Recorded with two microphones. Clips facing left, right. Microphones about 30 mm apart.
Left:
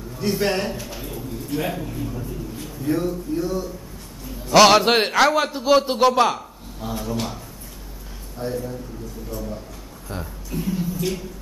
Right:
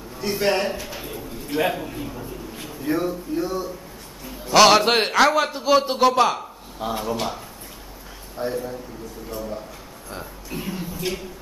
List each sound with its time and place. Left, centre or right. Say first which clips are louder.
0.2 s a man's voice: right 1 dB; centre
4.5 s a man's voice: left 1 dB; centre
6.8 s speech: right 3 dB; right
8.4 s a man's voice: right 1 dB; centre